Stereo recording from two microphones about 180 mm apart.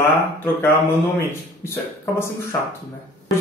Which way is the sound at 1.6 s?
15° left (ahead or behind).